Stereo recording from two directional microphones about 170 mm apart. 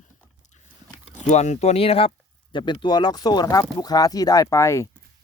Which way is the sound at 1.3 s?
40° left (ahead or behind).